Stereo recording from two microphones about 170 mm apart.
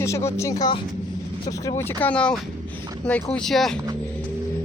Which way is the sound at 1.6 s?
10° left (ahead or behind).